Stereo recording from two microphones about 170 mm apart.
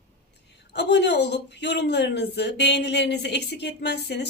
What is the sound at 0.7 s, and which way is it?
Speech, 90° left.